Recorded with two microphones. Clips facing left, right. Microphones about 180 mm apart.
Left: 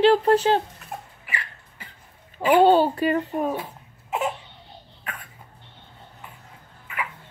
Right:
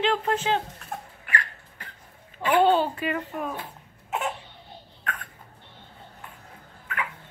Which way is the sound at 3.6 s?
10° left (ahead or behind).